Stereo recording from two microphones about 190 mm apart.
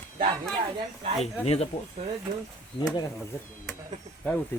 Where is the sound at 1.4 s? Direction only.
30° left (ahead or behind).